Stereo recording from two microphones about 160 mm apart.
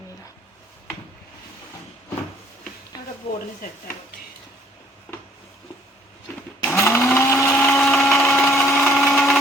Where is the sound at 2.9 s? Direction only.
25° left (ahead or behind).